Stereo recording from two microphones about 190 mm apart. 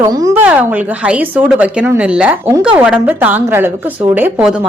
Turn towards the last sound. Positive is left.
turn(degrees=-5)  # may be behind; listen again after turning